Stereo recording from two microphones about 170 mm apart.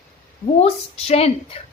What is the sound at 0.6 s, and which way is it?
Speech, 40° left (ahead or behind).